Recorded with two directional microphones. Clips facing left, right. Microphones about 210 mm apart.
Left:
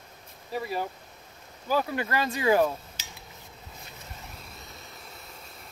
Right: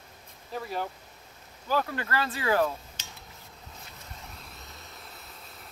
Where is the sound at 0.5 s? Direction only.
10° left (ahead or behind).